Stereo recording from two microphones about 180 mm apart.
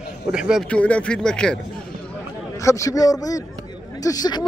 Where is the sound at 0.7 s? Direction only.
5° left (ahead or behind).